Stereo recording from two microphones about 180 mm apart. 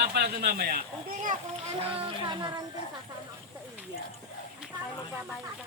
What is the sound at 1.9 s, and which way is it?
Speech, 30° right (ahead or behind).